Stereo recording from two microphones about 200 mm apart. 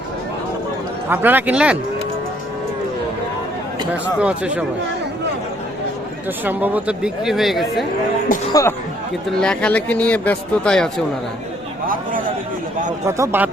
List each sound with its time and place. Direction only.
1.1 s speech: 10° right (ahead or behind)
3.9 s speech: 5° right (ahead or behind)
6.4 s speech: 10° right (ahead or behind)
8.3 s music: 45° left (ahead or behind)
9.4 s speech: 5° left (ahead or behind)
13.1 s speech: 15° right (ahead or behind)